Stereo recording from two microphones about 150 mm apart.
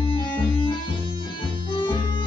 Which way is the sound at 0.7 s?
35° left (ahead or behind).